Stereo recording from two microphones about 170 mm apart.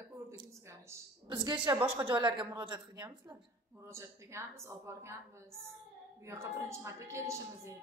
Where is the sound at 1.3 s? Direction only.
30° right (ahead or behind).